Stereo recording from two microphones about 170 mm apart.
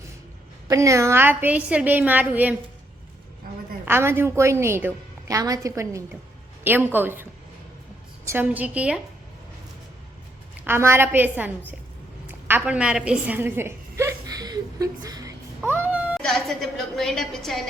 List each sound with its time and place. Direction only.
0.7 s a woman's voice: 20° right (ahead or behind)
3.8 s a woman's voice: 15° right (ahead or behind)
8.3 s a woman's voice: 10° right (ahead or behind)
10.6 s a woman's voice: 15° right (ahead or behind); by 17.6 s centre (ahead or behind)